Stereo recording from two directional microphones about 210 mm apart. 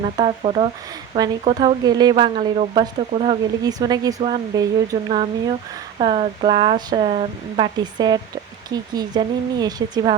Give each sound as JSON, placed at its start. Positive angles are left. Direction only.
{"t": 0.2, "sound": "speech", "side_deg": -25}